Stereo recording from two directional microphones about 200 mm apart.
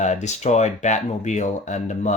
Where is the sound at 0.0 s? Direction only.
35° left (ahead or behind).